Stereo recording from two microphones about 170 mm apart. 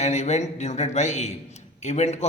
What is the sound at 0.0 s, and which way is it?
A man's voice, 40° left (ahead or behind).